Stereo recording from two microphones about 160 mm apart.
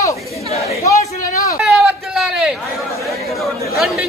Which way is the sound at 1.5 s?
5° right (ahead or behind).